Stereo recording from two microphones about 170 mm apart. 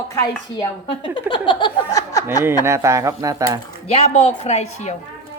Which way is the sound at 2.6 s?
15° right (ahead or behind).